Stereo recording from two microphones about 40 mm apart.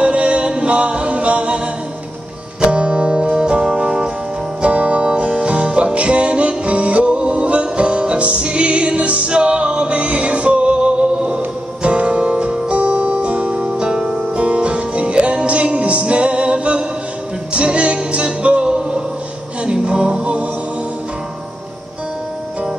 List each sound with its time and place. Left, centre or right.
0.0 s music: right
2.6 s music: right
4.6 s music: right